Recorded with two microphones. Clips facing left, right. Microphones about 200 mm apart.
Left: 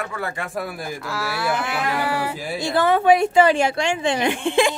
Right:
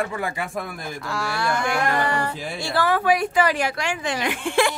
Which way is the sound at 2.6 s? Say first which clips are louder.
Left 4 dB; 20° left (ahead or behind).